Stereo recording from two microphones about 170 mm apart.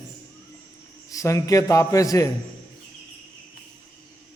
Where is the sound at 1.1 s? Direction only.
20° left (ahead or behind).